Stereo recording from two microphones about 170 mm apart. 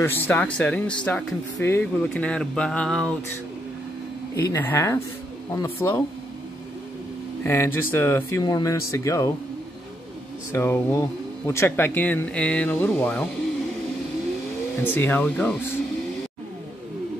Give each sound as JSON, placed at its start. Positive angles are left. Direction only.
{"t": 0.0, "sound": "speech", "side_deg": 10}
{"t": 4.4, "sound": "speech", "side_deg": 10}
{"t": 7.4, "sound": "speech", "side_deg": 15}
{"t": 10.5, "sound": "speech", "side_deg": 15}
{"t": 14.8, "sound": "speech", "side_deg": 10}